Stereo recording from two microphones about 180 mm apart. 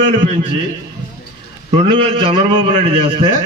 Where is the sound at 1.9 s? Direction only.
30° right (ahead or behind).